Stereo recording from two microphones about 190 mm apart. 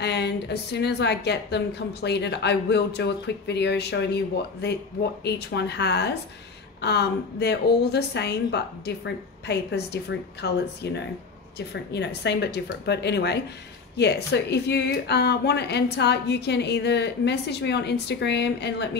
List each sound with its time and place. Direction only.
0.0 s speech: 60° left (ahead or behind)